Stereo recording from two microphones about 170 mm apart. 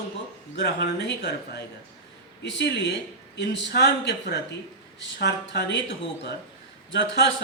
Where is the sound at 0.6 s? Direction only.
85° left.